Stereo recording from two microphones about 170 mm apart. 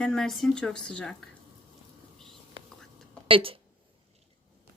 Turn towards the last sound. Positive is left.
turn(degrees=-30)  # may be behind; listen again after turning